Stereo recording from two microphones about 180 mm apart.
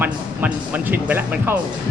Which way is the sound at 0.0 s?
10° right (ahead or behind).